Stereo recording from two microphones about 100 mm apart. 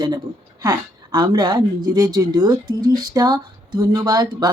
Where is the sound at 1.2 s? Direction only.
45° right (ahead or behind).